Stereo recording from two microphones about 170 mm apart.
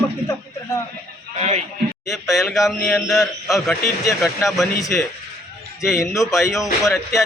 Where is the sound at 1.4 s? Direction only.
40° right (ahead or behind).